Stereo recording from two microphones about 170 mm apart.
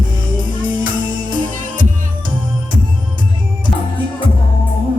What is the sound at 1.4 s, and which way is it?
Music, 50° right (ahead or behind).